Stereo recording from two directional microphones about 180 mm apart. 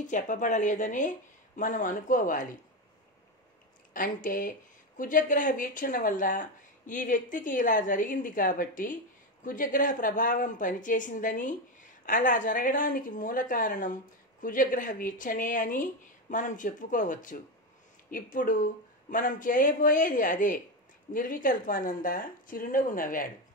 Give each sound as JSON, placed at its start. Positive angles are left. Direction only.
{"t": 0.0, "sound": "a woman's voice", "side_deg": 45}
{"t": 3.9, "sound": "a woman's voice", "side_deg": 50}